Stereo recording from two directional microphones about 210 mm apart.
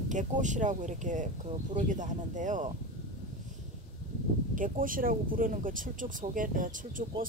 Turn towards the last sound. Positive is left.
turn(degrees=-40)  # may be behind; listen again after turning